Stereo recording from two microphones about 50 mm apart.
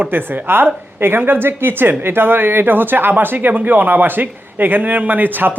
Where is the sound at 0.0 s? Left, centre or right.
Right.